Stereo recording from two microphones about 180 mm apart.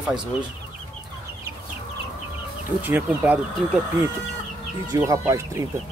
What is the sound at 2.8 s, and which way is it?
Speech, 10° right (ahead or behind).